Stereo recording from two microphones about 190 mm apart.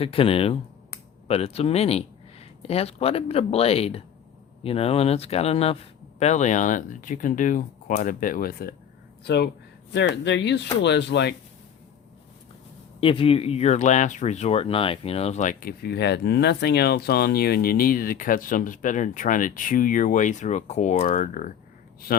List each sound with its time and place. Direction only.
0.0 s speech: 30° left (ahead or behind); by 11.3 s 65° left (ahead or behind)
13.0 s speech: 30° left (ahead or behind)
15.8 s speech: 60° left (ahead or behind); by 21.5 s 45° left (ahead or behind)